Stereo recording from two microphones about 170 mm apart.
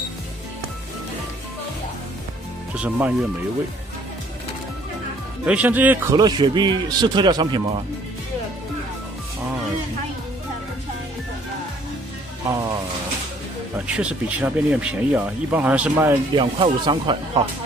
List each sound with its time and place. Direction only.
2.7 s speech: 10° right (ahead or behind)
5.4 s speech: 10° right (ahead or behind)
6.1 s speech: 25° right (ahead or behind)
13.7 s speech: 5° right (ahead or behind)
16.3 s speech: 30° right (ahead or behind)